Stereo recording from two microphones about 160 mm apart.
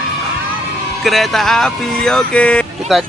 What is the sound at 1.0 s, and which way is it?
Speech, centre (ahead or behind).